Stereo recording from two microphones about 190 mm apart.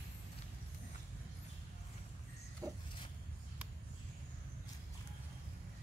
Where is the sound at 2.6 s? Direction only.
20° right (ahead or behind).